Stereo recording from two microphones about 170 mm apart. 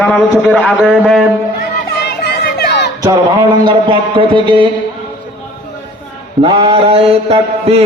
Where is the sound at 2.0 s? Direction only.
70° left (ahead or behind).